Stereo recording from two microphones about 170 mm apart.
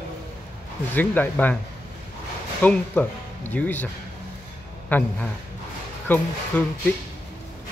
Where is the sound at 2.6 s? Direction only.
10° left (ahead or behind).